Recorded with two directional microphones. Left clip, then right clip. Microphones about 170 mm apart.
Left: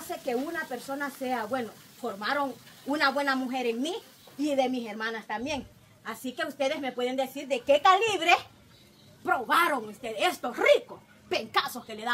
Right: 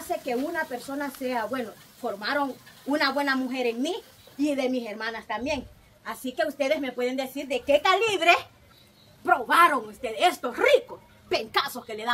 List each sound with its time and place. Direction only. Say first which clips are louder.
0.3 s speech: even; 15° left (ahead or behind)
2.9 s a woman's voice: right 1 dB; 20° left (ahead or behind)